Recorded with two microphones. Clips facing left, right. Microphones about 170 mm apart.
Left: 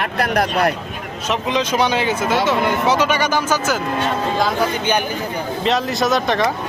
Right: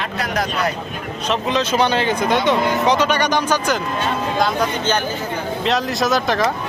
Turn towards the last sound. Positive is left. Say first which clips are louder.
# left 1 dB
turn(degrees=0)  # may be behind; listen again after turning